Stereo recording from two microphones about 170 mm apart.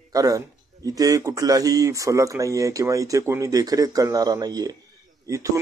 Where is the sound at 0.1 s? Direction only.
20° right (ahead or behind).